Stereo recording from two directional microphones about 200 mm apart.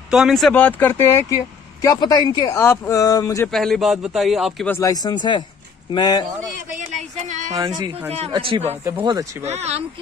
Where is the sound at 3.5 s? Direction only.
Centre (ahead or behind).